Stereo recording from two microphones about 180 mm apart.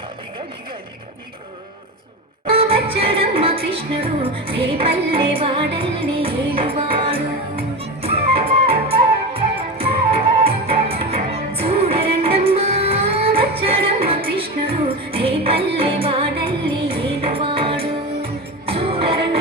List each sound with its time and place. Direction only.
2.5 s music: 30° right (ahead or behind)